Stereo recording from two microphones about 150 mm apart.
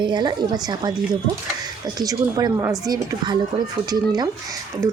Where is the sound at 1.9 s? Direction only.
25° right (ahead or behind).